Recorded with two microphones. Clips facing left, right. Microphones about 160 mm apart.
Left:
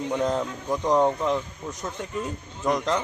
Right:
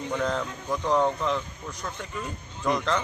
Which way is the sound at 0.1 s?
20° left (ahead or behind).